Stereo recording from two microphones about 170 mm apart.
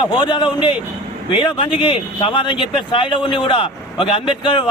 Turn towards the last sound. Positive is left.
turn(degrees=30)  # may be behind; listen again after turning